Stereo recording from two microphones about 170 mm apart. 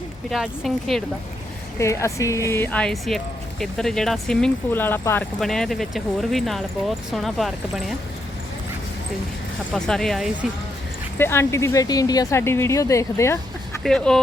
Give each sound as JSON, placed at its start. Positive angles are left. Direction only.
{"t": 0.3, "sound": "speech", "side_deg": 0}
{"t": 1.8, "sound": "speech", "side_deg": 15}
{"t": 5.4, "sound": "speech", "side_deg": 0}
{"t": 9.7, "sound": "speech", "side_deg": 5}
{"t": 11.2, "sound": "speech", "side_deg": 15}
{"t": 13.8, "sound": "speech", "side_deg": 5}